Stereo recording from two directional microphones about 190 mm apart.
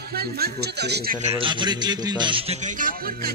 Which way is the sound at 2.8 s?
50° right (ahead or behind).